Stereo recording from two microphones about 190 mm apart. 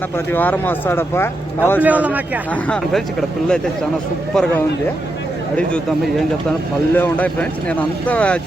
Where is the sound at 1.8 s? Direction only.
10° right (ahead or behind).